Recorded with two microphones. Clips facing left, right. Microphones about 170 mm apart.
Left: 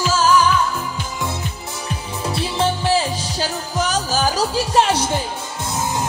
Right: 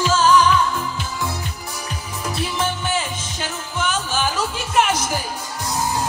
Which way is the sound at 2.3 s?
30° left (ahead or behind).